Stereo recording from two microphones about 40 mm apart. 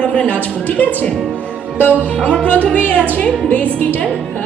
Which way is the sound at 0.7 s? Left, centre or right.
Left.